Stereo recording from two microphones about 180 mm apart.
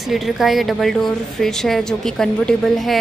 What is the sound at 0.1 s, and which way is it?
A woman's voice, centre (ahead or behind).